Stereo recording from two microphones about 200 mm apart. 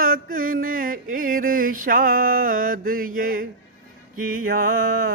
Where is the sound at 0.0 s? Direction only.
45° right (ahead or behind).